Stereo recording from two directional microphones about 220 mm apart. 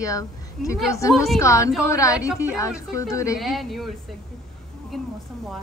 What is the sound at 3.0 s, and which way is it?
Speech, 15° left (ahead or behind).